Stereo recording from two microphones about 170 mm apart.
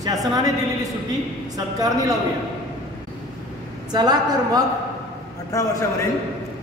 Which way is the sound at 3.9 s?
25° right (ahead or behind).